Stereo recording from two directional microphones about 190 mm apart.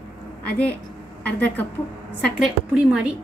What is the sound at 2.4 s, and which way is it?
Speech, 5° right (ahead or behind).